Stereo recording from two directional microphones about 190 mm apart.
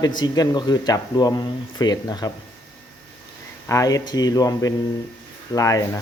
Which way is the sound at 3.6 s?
15° left (ahead or behind).